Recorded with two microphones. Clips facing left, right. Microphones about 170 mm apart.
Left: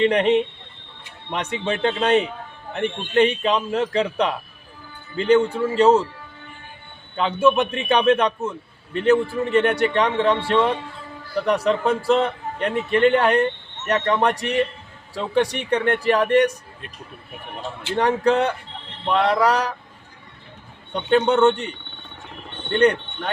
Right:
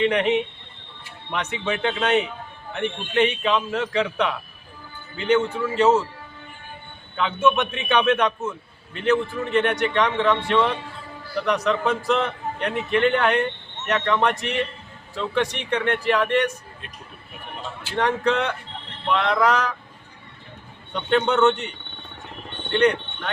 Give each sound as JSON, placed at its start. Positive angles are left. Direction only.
{"t": 0.0, "sound": "a man's voice", "side_deg": 35}
{"t": 7.4, "sound": "a man's voice", "side_deg": 35}
{"t": 17.8, "sound": "a man's voice", "side_deg": 35}
{"t": 20.9, "sound": "a man's voice", "side_deg": 35}